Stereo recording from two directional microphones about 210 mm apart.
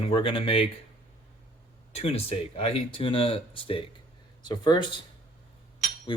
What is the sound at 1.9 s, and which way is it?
Speech, 30° left (ahead or behind).